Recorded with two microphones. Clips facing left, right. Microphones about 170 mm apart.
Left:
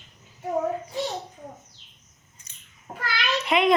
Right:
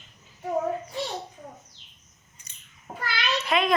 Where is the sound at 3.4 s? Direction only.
20° left (ahead or behind).